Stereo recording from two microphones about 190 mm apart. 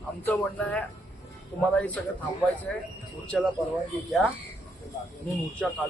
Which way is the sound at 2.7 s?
5° left (ahead or behind).